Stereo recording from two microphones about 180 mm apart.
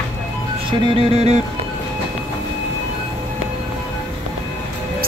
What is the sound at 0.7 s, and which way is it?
Music, 35° right (ahead or behind).